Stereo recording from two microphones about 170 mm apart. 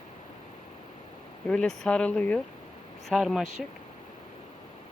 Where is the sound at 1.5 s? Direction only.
5° left (ahead or behind).